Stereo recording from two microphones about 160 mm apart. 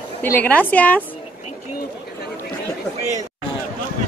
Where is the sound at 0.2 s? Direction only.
10° left (ahead or behind).